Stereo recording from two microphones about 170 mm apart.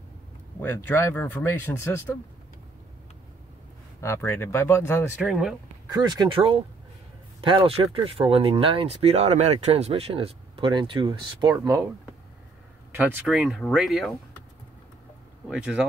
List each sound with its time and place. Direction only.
0.6 s speech: 10° left (ahead or behind)
4.0 s speech: 15° left (ahead or behind)
5.2 s speech: 5° right (ahead or behind)
5.9 s speech: 25° right (ahead or behind)
13.0 s speech: 5° right (ahead or behind)
15.4 s speech: 5° right (ahead or behind)